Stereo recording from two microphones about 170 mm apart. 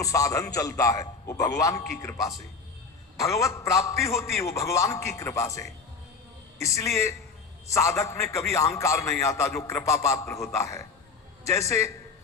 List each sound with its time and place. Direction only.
0.0 s a man's voice: 20° left (ahead or behind)
6.8 s a man's voice: 20° left (ahead or behind)